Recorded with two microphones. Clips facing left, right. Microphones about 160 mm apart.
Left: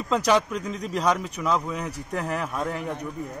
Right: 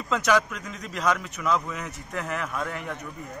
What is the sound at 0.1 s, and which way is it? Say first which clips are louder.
A man's voice: left 2 dB; 35° left (ahead or behind).